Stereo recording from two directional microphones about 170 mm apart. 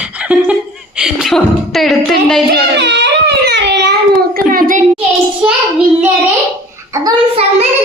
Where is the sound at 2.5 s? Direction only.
85° right.